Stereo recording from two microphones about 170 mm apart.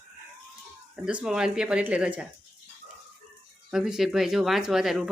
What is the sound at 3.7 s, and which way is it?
A woman's voice, centre (ahead or behind).